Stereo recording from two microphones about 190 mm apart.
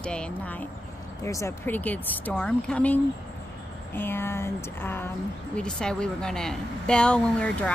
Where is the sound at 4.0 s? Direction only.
10° left (ahead or behind).